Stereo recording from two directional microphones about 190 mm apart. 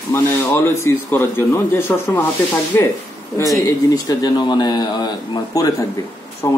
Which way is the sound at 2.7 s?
15° left (ahead or behind).